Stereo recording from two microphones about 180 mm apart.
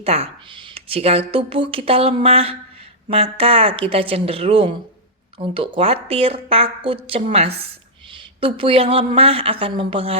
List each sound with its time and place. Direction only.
0.0 s speech: 30° right (ahead or behind)